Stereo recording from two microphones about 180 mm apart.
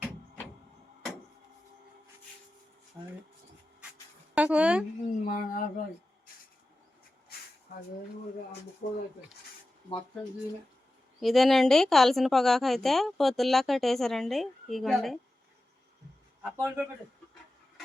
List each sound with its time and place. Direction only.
3.0 s a sound: 10° right (ahead or behind)
4.4 s speech: 5° right (ahead or behind)
5.2 s speech: 50° left (ahead or behind)
8.8 s speech: 55° left (ahead or behind)
11.2 s a woman's voice: centre (ahead or behind)
16.6 s speech: 15° right (ahead or behind)